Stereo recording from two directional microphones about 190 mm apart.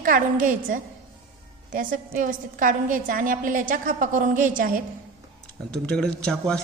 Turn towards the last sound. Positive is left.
turn(degrees=5)  # may be behind; listen again after turning